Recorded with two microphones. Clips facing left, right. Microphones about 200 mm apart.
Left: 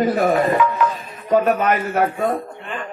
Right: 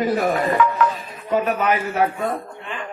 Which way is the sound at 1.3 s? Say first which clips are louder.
Left 3 dB; 45° left (ahead or behind).